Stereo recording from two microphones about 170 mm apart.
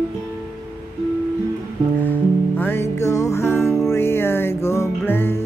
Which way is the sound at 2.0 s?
10° left (ahead or behind).